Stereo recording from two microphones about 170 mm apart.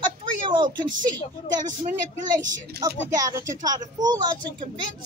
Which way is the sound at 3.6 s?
20° right (ahead or behind).